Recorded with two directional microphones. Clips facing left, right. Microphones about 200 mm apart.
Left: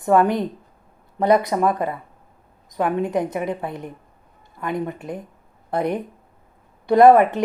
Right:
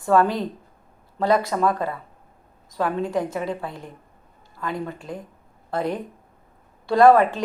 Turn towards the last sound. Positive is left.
turn(degrees=20)  # may be behind; listen again after turning